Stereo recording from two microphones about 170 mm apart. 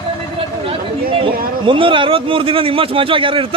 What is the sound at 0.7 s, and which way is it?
A man's voice, 30° right (ahead or behind).